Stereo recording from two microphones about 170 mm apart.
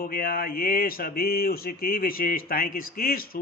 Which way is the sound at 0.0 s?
60° left (ahead or behind).